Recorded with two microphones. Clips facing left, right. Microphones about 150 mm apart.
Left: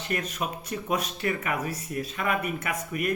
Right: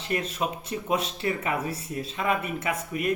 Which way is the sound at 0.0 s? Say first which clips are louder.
Right 2 dB; 30° right (ahead or behind).